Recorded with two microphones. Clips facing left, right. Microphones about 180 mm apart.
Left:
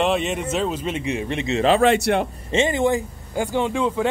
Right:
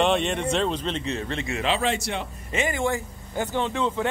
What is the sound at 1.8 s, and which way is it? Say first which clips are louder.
Speech: left 9 dB; 60° left (ahead or behind).